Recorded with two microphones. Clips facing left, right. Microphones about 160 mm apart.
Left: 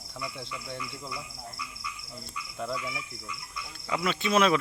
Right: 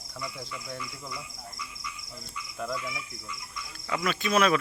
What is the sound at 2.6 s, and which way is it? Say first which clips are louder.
Insect: even; 10° left (ahead or behind).